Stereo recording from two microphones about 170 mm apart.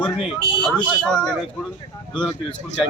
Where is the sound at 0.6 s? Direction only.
5° left (ahead or behind).